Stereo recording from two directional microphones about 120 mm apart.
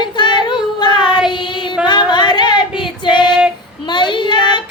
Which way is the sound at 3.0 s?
40° left (ahead or behind).